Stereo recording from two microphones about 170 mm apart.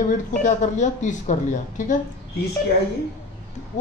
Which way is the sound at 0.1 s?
50° left (ahead or behind).